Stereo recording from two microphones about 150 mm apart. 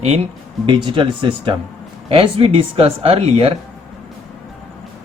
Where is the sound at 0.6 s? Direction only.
35° right (ahead or behind).